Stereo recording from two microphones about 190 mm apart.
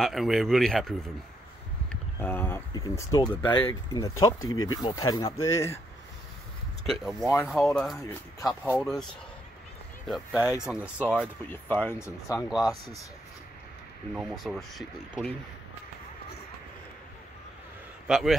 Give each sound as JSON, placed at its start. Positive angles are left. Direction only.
{"t": 0.0, "sound": "speech", "side_deg": 0}
{"t": 4.4, "sound": "speech", "side_deg": 90}
{"t": 4.8, "sound": "speech", "side_deg": 20}
{"t": 6.9, "sound": "speech", "side_deg": 0}
{"t": 10.0, "sound": "speech", "side_deg": 0}
{"t": 11.7, "sound": "speech", "side_deg": 10}
{"t": 12.4, "sound": "speech", "side_deg": 0}
{"t": 14.1, "sound": "speech", "side_deg": 0}
{"t": 18.0, "sound": "speech", "side_deg": 0}